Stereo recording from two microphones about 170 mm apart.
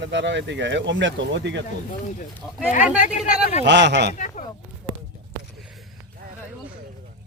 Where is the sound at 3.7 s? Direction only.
90° right.